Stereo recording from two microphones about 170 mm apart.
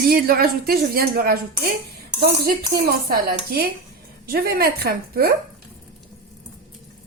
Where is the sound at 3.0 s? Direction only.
60° right (ahead or behind).